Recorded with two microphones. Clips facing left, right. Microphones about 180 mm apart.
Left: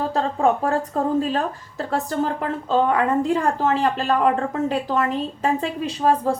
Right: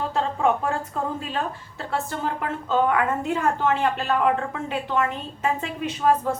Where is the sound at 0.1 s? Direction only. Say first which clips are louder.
Left 2 dB; 35° left (ahead or behind).